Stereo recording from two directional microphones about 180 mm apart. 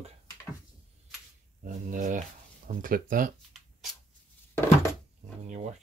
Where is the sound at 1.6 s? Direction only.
50° right (ahead or behind).